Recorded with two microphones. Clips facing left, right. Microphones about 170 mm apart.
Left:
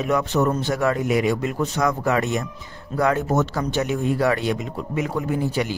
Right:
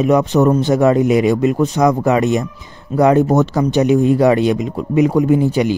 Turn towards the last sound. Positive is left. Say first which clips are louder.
# right 9 dB
turn(degrees=-20)  # may be behind; listen again after turning